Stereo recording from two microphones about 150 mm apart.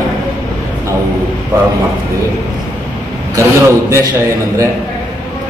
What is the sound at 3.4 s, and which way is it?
Speech, 20° right (ahead or behind).